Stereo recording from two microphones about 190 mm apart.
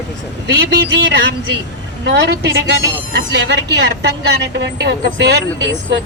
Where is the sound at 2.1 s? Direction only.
60° right (ahead or behind).